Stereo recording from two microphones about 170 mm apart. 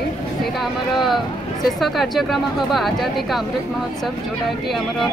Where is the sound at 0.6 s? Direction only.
Centre (ahead or behind).